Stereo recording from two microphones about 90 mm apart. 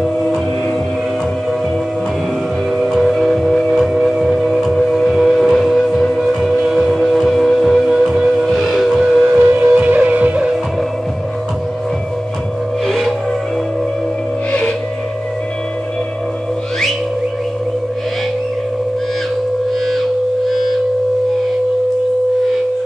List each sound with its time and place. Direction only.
0.0 s music: centre (ahead or behind)
2.8 s music: centre (ahead or behind)
3.9 s train: centre (ahead or behind)
6.4 s music: 5° right (ahead or behind)
9.4 s music: 20° right (ahead or behind)
12.8 s music: 5° left (ahead or behind)